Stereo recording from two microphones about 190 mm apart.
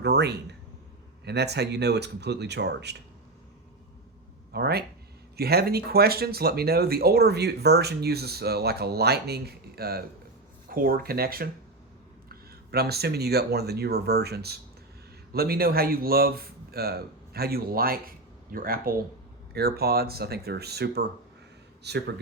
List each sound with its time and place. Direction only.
0.0 s speech: 60° right (ahead or behind)
4.5 s speech: 55° right (ahead or behind)